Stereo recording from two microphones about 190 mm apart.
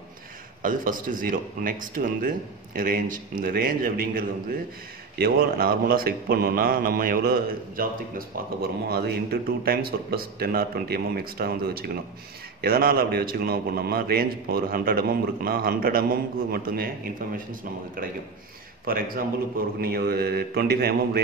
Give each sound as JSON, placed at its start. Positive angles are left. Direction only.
{"t": 0.6, "sound": "a man's voice", "side_deg": -45}
{"t": 18.9, "sound": "a man's voice", "side_deg": -50}